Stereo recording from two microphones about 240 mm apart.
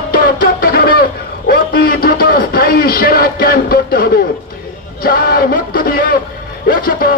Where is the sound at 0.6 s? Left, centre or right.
Left.